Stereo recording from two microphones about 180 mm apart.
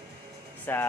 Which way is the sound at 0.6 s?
10° left (ahead or behind).